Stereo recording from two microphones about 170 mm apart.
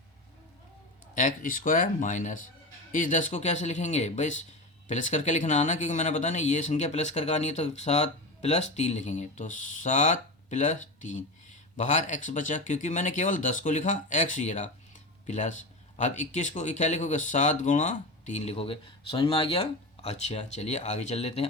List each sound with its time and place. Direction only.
1.1 s speech: 50° left (ahead or behind)